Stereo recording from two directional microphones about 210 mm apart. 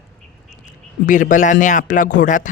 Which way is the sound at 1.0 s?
40° left (ahead or behind).